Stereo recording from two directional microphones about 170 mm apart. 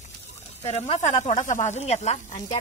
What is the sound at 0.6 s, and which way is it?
Speech, 40° left (ahead or behind).